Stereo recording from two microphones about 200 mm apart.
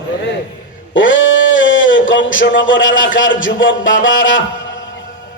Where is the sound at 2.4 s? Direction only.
70° left (ahead or behind).